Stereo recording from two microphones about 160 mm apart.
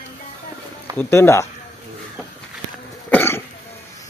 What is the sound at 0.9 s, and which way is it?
Speech, 15° left (ahead or behind).